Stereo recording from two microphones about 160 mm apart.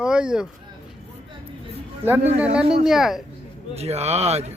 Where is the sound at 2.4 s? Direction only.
5° right (ahead or behind).